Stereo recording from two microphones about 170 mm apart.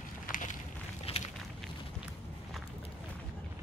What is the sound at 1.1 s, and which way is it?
Walk, 35° left (ahead or behind).